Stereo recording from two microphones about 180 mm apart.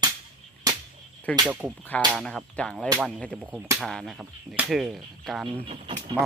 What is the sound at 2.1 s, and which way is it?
Speech, 5° left (ahead or behind).